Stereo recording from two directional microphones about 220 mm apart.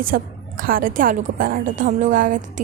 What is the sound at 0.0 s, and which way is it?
A woman's voice, 40° right (ahead or behind).